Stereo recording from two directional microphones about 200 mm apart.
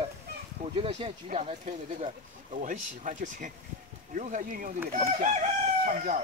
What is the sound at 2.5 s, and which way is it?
Speech, 40° right (ahead or behind).